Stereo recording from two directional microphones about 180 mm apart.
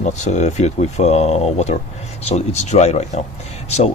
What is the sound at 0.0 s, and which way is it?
Speech, 40° left (ahead or behind).